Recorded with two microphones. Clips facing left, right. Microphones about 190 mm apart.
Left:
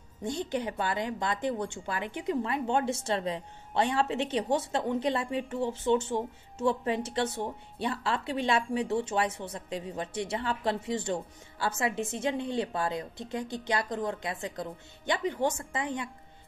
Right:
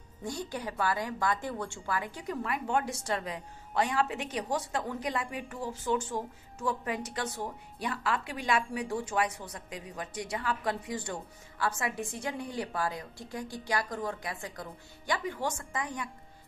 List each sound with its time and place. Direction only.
0.2 s a woman's voice: 20° left (ahead or behind)